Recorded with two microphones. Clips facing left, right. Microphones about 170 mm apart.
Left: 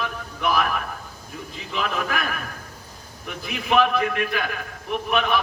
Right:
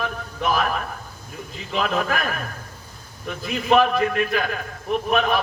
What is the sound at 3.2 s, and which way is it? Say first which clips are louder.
A man's voice: right 5 dB; 40° right (ahead or behind).